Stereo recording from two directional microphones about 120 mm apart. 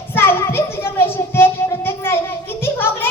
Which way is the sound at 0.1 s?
20° left (ahead or behind).